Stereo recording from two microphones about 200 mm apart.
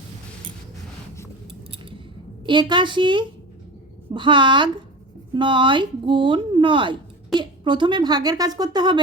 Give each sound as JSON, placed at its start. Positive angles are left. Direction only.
{"t": 2.5, "sound": "speech", "side_deg": -25}